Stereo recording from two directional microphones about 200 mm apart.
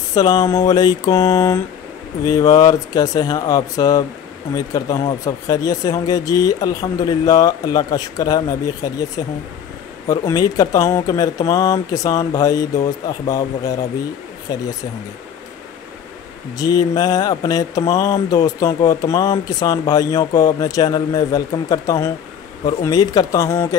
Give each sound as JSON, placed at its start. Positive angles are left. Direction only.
{"t": 0.1, "sound": "speech", "side_deg": 20}
{"t": 14.5, "sound": "speech", "side_deg": 20}
{"t": 16.5, "sound": "speech", "side_deg": 20}